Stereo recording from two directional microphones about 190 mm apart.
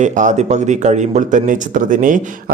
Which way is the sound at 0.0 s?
40° right (ahead or behind).